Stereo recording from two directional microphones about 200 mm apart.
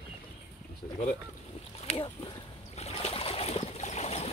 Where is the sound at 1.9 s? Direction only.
25° left (ahead or behind).